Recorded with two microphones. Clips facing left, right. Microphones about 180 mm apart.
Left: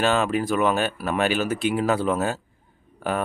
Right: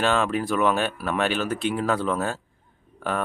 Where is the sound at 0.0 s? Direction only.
Centre (ahead or behind).